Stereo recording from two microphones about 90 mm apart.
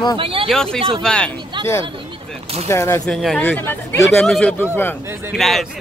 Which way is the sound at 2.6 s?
30° left (ahead or behind).